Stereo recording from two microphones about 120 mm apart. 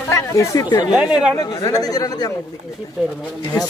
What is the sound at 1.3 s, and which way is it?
Speech, 30° left (ahead or behind).